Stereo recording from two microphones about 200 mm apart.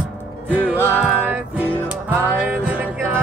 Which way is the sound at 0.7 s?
10° left (ahead or behind).